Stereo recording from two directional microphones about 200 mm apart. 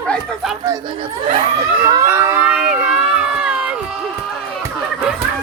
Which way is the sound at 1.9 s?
15° right (ahead or behind).